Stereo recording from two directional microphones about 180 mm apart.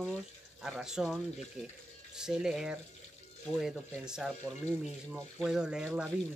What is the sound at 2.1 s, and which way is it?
Speech, 5° right (ahead or behind).